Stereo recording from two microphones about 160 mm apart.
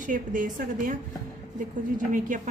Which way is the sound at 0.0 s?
55° right (ahead or behind).